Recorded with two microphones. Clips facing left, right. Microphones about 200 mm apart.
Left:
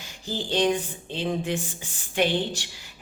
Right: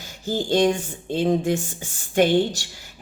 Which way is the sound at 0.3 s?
45° right (ahead or behind).